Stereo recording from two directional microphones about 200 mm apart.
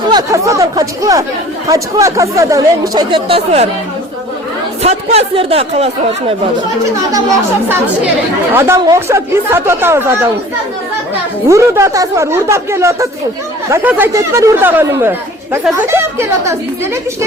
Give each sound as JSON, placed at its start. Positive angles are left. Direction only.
{"t": 0.1, "sound": "speech", "side_deg": -15}
{"t": 4.8, "sound": "speech", "side_deg": -30}
{"t": 8.5, "sound": "speech", "side_deg": -15}
{"t": 11.4, "sound": "speech", "side_deg": -15}